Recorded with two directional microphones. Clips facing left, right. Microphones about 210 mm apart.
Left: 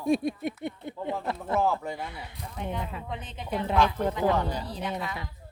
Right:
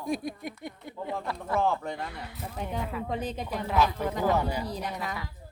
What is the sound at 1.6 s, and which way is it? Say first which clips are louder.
Speech: right 1 dB; 5° left (ahead or behind).